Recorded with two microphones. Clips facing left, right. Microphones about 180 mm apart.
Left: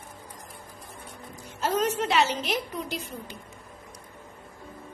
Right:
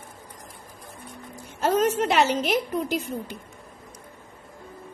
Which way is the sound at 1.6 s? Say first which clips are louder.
Right 4 dB; 55° right (ahead or behind).